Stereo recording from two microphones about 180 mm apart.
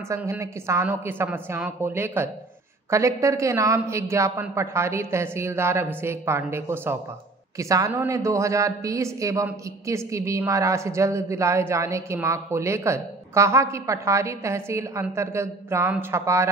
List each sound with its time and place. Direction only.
0.1 s a woman's voice: 15° right (ahead or behind)